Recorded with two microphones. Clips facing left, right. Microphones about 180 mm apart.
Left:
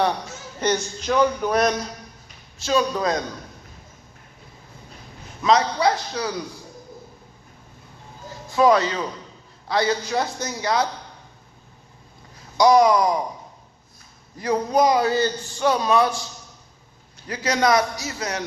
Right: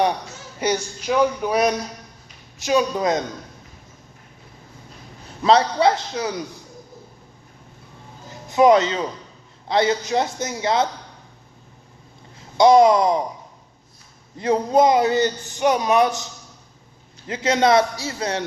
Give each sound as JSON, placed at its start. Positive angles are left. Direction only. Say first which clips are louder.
{"t": 0.6, "sound": "a man's voice", "louder": "even", "side_deg": -10}
{"t": 5.4, "sound": "a man's voice", "louder": "right 3 dB", "side_deg": -30}
{"t": 8.3, "sound": "music", "louder": "right 3 dB", "side_deg": -20}
{"t": 9.6, "sound": "a man's voice", "louder": "right 3 dB", "side_deg": -20}
{"t": 12.4, "sound": "speech", "louder": "right 3 dB", "side_deg": -25}
{"t": 14.3, "sound": "a man's voice", "louder": "right 3 dB", "side_deg": -25}